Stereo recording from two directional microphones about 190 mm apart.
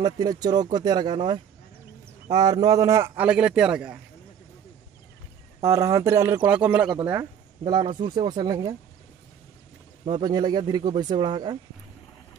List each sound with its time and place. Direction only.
0.0 s a man's voice: 20° right (ahead or behind)
5.6 s a man's voice: 15° right (ahead or behind)
7.1 s speech: 20° right (ahead or behind)
10.0 s speech: 25° right (ahead or behind)